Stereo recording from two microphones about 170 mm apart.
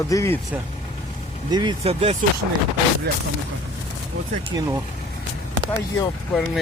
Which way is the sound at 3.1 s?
65° right (ahead or behind).